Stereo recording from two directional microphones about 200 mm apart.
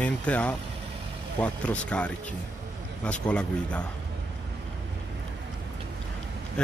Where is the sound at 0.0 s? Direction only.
5° left (ahead or behind).